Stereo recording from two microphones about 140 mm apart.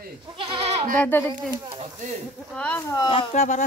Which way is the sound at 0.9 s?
10° left (ahead or behind).